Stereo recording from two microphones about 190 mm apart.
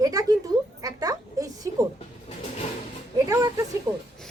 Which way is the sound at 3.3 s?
15° right (ahead or behind).